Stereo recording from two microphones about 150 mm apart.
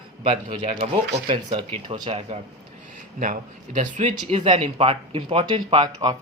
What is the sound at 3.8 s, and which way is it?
Speech, 50° right (ahead or behind).